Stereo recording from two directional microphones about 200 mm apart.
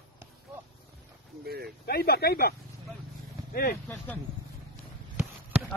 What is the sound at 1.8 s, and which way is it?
Speech, 50° left (ahead or behind).